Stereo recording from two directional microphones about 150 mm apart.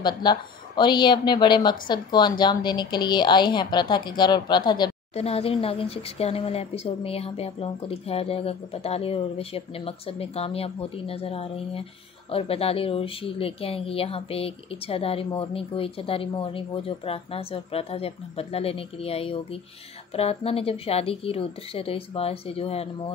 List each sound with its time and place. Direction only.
0.0 s a woman's voice: 30° left (ahead or behind)
5.1 s speech: 40° left (ahead or behind)